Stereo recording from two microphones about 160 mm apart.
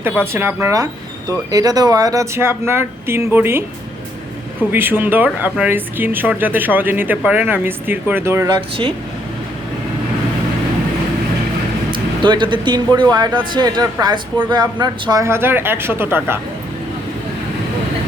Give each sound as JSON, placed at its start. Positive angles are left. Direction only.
{"t": 0.0, "sound": "speech", "side_deg": -15}
{"t": 4.7, "sound": "speech", "side_deg": -15}
{"t": 11.9, "sound": "speech", "side_deg": -30}